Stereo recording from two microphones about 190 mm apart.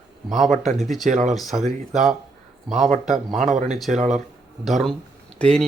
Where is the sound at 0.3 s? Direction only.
Centre (ahead or behind).